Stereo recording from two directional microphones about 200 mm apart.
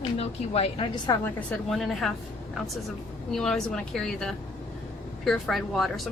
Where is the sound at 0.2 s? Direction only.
30° left (ahead or behind).